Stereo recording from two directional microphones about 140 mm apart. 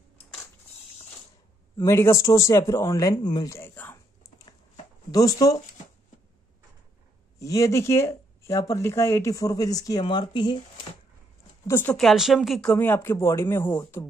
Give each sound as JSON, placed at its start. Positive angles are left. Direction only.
{"t": 1.9, "sound": "speech", "side_deg": 20}
{"t": 3.5, "sound": "speech", "side_deg": 15}
{"t": 5.1, "sound": "speech", "side_deg": 25}
{"t": 7.3, "sound": "speech", "side_deg": 25}
{"t": 11.6, "sound": "speech", "side_deg": 15}
{"t": 12.0, "sound": "speech", "side_deg": 0}
{"t": 12.7, "sound": "speech", "side_deg": 15}